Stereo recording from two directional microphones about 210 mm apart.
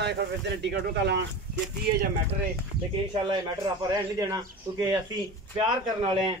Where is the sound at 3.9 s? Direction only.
15° right (ahead or behind).